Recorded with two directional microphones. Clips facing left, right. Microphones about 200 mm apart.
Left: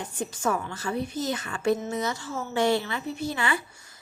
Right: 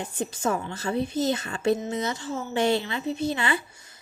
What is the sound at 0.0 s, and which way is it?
A woman's voice, 25° right (ahead or behind).